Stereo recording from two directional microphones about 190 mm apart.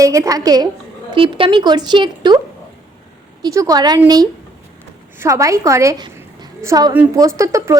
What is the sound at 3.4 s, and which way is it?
Speech, 20° right (ahead or behind).